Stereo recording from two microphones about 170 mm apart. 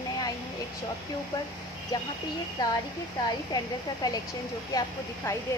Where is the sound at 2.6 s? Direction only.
25° left (ahead or behind).